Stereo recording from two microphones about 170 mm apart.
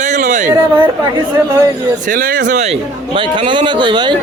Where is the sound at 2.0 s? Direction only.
55° right (ahead or behind).